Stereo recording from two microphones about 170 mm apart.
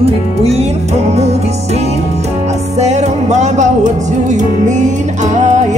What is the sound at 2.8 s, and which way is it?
Music, 40° right (ahead or behind).